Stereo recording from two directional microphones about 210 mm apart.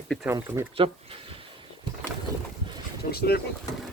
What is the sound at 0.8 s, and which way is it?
Speech, 25° right (ahead or behind).